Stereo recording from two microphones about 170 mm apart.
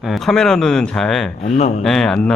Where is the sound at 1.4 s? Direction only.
40° left (ahead or behind).